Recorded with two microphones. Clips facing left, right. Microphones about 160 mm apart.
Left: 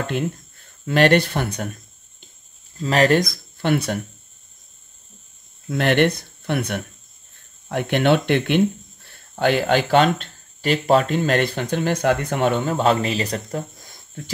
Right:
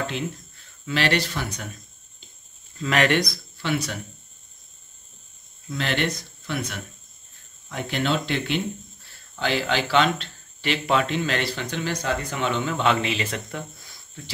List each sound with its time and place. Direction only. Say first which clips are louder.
0.0 s speech: left 5 dB; 50° left (ahead or behind)
2.8 s speech: left 4 dB; 35° left (ahead or behind); by 4.0 s 55° left (ahead or behind)
5.7 s speech: left 8 dB; 60° left (ahead or behind)